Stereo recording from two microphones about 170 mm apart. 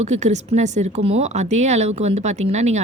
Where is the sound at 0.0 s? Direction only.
40° right (ahead or behind).